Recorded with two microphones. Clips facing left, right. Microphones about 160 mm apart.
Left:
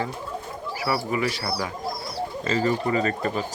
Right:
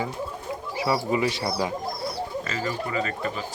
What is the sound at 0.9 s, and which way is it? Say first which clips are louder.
Speech: right 1 dB; 20° right (ahead or behind).